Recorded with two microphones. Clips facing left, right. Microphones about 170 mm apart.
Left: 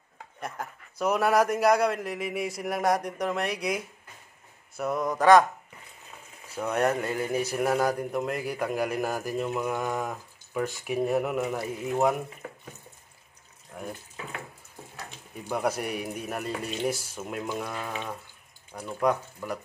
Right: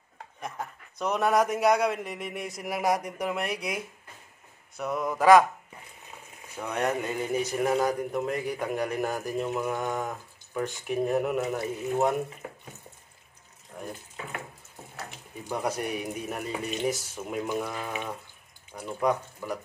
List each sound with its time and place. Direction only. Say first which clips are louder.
0.4 s a man's voice: even; 5° left (ahead or behind)
6.5 s a man's voice: left 3 dB; 5° left (ahead or behind)
13.7 s water tap: left 1 dB; centre (ahead or behind)
15.6 s a man's voice: left 1 dB; 5° left (ahead or behind)